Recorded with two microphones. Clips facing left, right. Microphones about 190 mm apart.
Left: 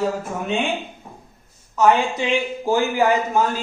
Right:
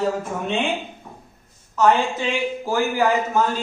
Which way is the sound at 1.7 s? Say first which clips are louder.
Left 1 dB; 15° left (ahead or behind).